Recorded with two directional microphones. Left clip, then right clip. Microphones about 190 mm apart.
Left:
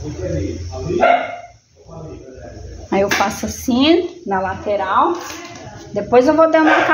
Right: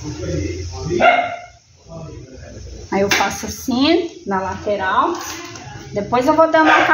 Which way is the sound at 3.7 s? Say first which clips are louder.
Left 2 dB; 40° left (ahead or behind).